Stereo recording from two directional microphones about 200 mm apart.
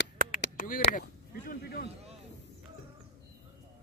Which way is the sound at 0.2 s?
45° right (ahead or behind).